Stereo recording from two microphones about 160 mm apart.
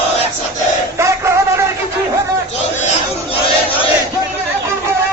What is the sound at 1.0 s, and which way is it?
Music, 15° right (ahead or behind).